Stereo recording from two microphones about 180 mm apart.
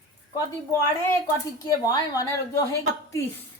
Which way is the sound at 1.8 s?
20° left (ahead or behind).